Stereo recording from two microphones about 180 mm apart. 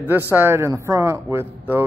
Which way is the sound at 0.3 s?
15° right (ahead or behind).